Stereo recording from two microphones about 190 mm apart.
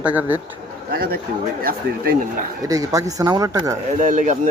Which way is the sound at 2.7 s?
15° right (ahead or behind).